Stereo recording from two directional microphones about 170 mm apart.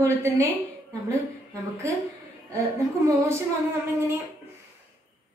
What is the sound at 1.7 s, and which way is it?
Speech, 15° right (ahead or behind).